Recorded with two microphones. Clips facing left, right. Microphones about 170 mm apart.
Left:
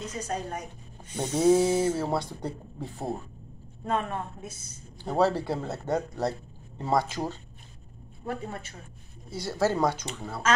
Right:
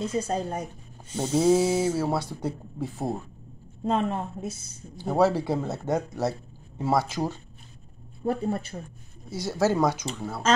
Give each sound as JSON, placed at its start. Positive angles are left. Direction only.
{"t": 0.0, "sound": "a man's voice", "side_deg": -30}
{"t": 1.1, "sound": "speech", "side_deg": -5}
{"t": 3.8, "sound": "a man's voice", "side_deg": -25}
{"t": 4.9, "sound": "speech", "side_deg": -10}
{"t": 8.5, "sound": "a man's voice", "side_deg": -35}
{"t": 9.4, "sound": "speech", "side_deg": -10}